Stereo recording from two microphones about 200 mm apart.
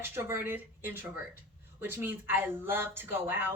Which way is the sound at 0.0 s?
10° right (ahead or behind).